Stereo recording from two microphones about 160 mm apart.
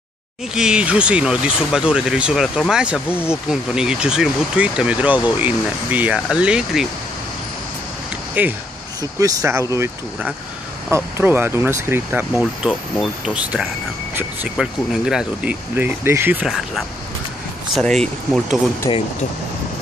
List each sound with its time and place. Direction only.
0.6 s speech: 5° right (ahead or behind)
3.1 s speech: 15° left (ahead or behind)
3.4 s speech: 5° right (ahead or behind)
8.4 s speech: 10° right (ahead or behind)
18.9 s speech: 30° left (ahead or behind)